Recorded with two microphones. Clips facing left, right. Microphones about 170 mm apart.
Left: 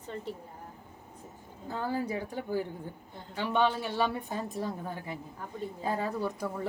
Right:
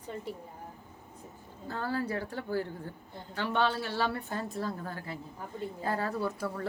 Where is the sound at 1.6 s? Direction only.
15° left (ahead or behind).